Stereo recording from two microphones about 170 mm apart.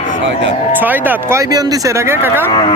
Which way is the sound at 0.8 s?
10° right (ahead or behind).